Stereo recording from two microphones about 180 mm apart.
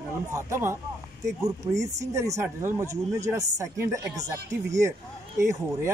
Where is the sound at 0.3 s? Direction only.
15° right (ahead or behind).